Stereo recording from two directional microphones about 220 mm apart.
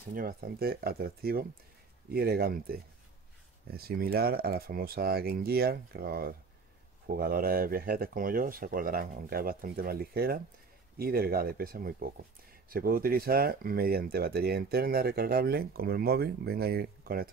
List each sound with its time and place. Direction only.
0.1 s speech: 40° right (ahead or behind)